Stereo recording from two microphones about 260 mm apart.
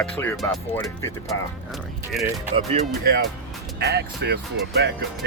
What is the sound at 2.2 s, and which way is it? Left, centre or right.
Speech, centre.